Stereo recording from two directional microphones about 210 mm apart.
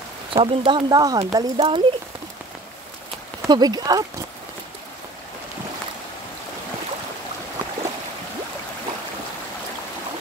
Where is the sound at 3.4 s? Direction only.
20° right (ahead or behind).